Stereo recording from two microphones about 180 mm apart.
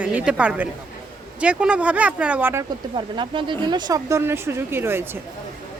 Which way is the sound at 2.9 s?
25° right (ahead or behind).